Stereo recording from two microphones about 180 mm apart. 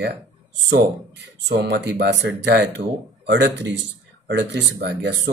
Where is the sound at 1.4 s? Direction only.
70° right (ahead or behind).